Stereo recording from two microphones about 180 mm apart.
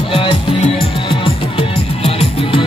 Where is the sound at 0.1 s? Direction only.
30° left (ahead or behind).